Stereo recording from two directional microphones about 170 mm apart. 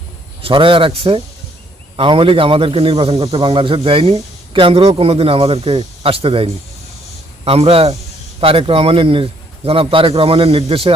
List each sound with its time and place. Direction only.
0.4 s a man's voice: 30° right (ahead or behind)